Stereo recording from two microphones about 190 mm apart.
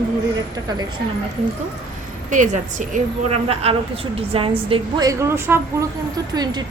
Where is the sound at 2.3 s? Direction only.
40° right (ahead or behind); by 5.8 s 10° right (ahead or behind).